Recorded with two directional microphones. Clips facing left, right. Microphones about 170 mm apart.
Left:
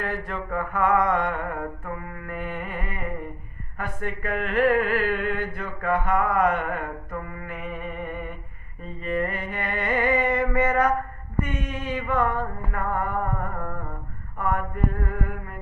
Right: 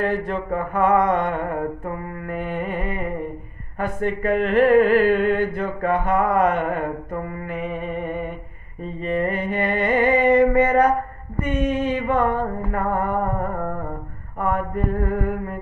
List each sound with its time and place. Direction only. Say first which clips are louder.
0.0 s mantra: right 7 dB; 25° right (ahead or behind)